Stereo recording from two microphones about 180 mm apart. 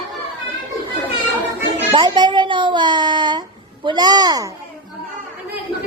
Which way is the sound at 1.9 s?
25° right (ahead or behind).